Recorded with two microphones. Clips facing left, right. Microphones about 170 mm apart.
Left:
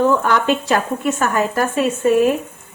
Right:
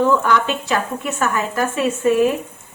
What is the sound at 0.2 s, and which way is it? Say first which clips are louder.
Speech: left 2 dB; 45° left (ahead or behind).